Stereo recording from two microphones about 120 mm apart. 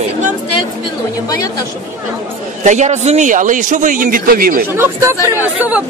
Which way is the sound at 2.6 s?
80° right.